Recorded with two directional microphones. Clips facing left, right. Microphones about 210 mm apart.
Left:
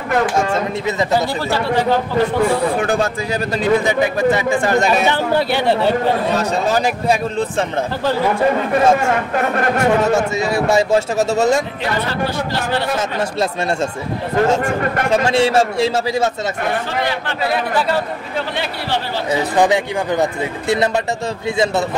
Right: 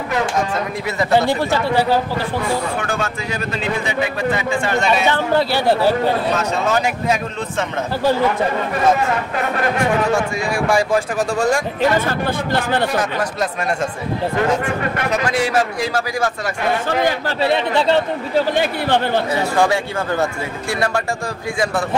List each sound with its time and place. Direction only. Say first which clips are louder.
2.8 s speech: left 5 dB; 35° left (ahead or behind)
5.5 s speech: even; 5° right (ahead or behind)
6.3 s speech: left 2 dB; 35° left (ahead or behind)
10.1 s a man's voice: left 3 dB; 25° left (ahead or behind)
11.8 s speech: right 3 dB; 50° right (ahead or behind)
15.0 s a man's voice: left 5 dB; 25° left (ahead or behind)
17.4 s speech: right 1 dB; 25° right (ahead or behind)
18.6 s speech: right 5 dB; 50° right (ahead or behind)
19.5 s a man's voice: left 3 dB; 20° left (ahead or behind)